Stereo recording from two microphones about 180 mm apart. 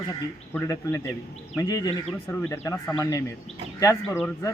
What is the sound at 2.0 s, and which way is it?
Speech, 5° left (ahead or behind).